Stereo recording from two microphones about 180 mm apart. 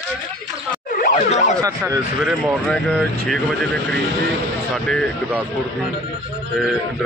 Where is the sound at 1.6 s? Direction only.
20° right (ahead or behind).